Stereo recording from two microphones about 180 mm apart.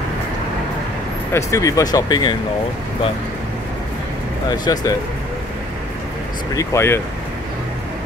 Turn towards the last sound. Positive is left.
turn(degrees=15)  # may be behind; listen again after turning